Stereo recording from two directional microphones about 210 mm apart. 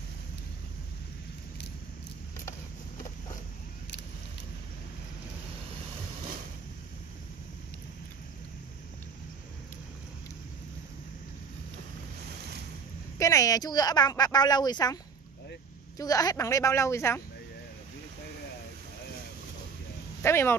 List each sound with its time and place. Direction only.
13.2 s speech: 15° left (ahead or behind)
16.0 s a woman's voice: 15° left (ahead or behind)
20.2 s speech: 10° left (ahead or behind)